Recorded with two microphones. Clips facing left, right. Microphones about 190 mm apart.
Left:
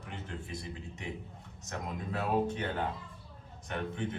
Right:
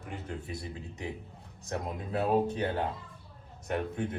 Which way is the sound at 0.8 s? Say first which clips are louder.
Right 2 dB; 35° right (ahead or behind).